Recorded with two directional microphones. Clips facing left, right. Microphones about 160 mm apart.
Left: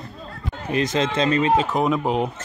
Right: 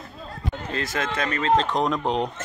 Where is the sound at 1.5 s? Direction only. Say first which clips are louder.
Left 2 dB; 5° left (ahead or behind).